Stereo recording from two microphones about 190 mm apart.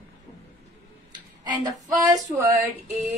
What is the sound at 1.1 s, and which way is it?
Speech, 20° right (ahead or behind).